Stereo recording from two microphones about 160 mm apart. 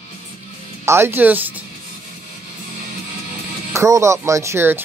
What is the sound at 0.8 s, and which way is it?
Speech, 15° right (ahead or behind).